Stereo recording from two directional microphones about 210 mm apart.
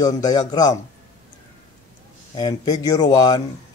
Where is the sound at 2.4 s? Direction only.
20° left (ahead or behind).